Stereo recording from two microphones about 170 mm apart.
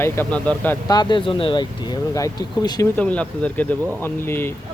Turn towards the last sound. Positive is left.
turn(degrees=15)  # may be behind; listen again after turning